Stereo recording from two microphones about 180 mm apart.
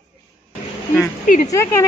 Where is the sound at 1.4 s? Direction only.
15° left (ahead or behind).